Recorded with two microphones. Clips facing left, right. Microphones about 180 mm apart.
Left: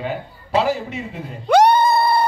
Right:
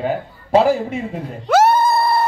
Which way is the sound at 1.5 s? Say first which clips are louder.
Even; 5° right (ahead or behind).